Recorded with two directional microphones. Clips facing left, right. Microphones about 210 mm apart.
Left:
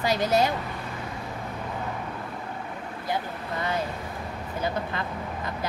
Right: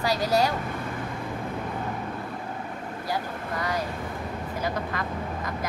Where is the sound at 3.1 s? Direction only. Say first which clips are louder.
Left 1 dB; 25° left (ahead or behind).